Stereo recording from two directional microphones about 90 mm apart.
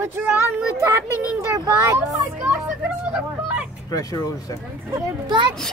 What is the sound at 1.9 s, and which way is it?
Speech, 15° right (ahead or behind).